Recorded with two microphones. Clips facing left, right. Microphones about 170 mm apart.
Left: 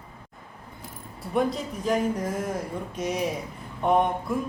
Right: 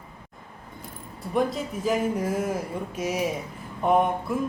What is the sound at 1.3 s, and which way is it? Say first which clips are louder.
Speech: even; 5° right (ahead or behind).